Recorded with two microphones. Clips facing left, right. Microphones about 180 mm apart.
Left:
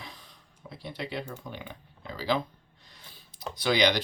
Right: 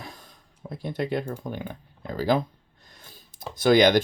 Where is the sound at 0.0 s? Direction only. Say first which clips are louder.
Right 4 dB; 45° right (ahead or behind).